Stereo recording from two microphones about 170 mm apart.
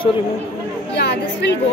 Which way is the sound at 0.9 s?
80° left.